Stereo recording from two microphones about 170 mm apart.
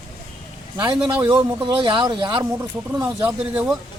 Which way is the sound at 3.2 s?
10° right (ahead or behind).